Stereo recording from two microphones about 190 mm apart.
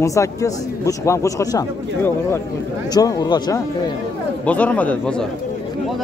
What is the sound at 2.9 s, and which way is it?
Speech, 20° left (ahead or behind).